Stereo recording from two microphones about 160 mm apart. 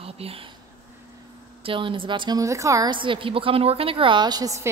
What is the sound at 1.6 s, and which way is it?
A woman's voice, 35° right (ahead or behind).